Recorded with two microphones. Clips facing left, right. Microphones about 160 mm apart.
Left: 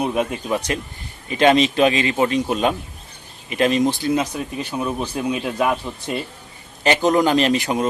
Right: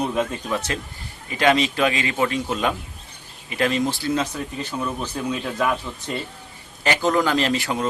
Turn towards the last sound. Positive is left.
turn(degrees=20)  # may be behind; listen again after turning